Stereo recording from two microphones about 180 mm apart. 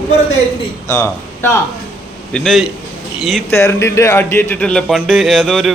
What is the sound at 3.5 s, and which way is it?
Speech, 15° left (ahead or behind).